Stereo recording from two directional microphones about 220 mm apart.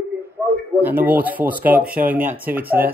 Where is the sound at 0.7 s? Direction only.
10° right (ahead or behind).